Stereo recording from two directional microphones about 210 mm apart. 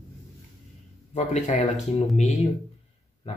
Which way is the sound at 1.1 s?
35° left (ahead or behind).